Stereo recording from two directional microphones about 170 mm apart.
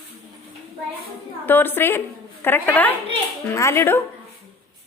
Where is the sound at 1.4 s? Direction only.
10° left (ahead or behind).